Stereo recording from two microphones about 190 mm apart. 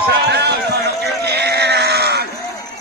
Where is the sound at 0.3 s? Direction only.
60° right (ahead or behind).